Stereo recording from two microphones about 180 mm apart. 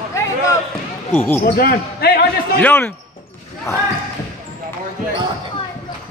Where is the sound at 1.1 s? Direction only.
10° left (ahead or behind).